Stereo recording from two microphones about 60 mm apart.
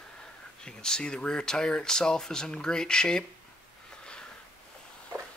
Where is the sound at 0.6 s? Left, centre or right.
Centre.